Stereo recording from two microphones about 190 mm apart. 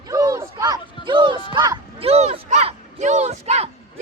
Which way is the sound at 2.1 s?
35° right (ahead or behind).